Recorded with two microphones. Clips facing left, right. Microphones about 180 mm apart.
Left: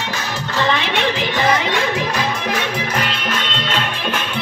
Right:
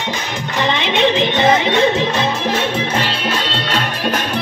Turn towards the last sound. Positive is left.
turn(degrees=-40)  # may be behind; listen again after turning